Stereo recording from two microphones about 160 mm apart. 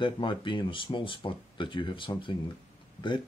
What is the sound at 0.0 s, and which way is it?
Speech, 30° left (ahead or behind).